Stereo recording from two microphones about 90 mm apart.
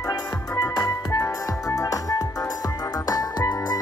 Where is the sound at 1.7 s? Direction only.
40° left (ahead or behind).